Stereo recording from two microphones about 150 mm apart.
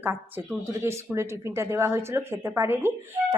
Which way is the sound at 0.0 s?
15° right (ahead or behind).